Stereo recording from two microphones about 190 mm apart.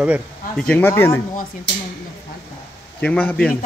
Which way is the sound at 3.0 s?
10° left (ahead or behind).